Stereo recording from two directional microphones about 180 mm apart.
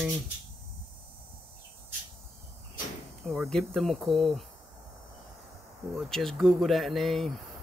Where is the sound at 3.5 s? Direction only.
Centre (ahead or behind).